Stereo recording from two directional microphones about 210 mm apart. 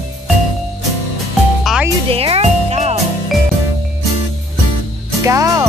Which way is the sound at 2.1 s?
25° right (ahead or behind).